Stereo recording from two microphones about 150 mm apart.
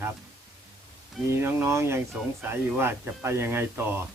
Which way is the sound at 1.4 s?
15° right (ahead or behind).